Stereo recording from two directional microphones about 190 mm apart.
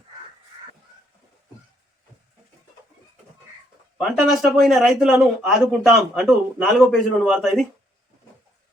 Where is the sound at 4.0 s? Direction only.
Centre (ahead or behind).